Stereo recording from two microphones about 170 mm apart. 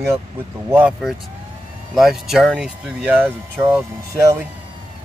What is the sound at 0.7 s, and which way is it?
Speech, 10° right (ahead or behind).